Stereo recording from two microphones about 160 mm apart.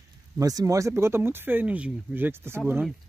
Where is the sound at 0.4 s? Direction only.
20° right (ahead or behind).